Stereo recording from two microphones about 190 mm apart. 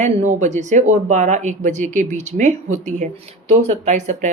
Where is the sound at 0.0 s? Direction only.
40° right (ahead or behind).